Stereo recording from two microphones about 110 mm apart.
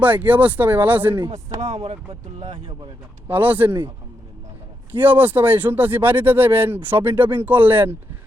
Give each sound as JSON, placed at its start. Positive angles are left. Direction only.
{"t": 0.0, "sound": "speech", "side_deg": -15}
{"t": 2.5, "sound": "speech", "side_deg": -50}
{"t": 3.2, "sound": "speech", "side_deg": -15}
{"t": 4.9, "sound": "speech", "side_deg": -15}